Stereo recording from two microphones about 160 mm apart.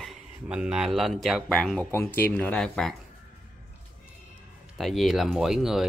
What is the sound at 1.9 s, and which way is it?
Speech, 15° left (ahead or behind).